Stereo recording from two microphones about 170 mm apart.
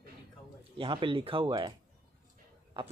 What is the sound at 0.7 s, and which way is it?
Speech, 30° right (ahead or behind).